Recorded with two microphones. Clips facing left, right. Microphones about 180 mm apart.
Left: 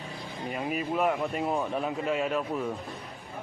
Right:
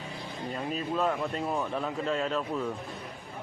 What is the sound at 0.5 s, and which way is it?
A man's voice, 10° left (ahead or behind).